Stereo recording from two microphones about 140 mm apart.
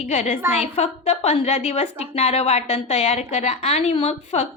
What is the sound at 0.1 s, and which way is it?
A woman's voice, 55° left (ahead or behind).